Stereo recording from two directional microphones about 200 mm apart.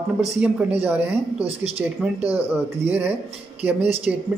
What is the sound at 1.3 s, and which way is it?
Speech, 30° right (ahead or behind).